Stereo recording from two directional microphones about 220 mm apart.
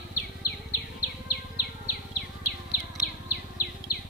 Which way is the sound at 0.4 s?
90° left.